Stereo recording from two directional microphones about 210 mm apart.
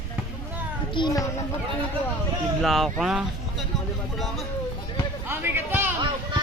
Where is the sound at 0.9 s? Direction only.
20° left (ahead or behind).